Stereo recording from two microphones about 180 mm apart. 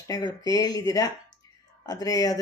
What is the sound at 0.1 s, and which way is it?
Speech, 20° left (ahead or behind).